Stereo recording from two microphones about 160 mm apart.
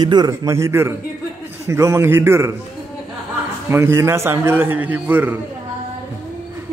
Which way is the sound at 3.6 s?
15° right (ahead or behind).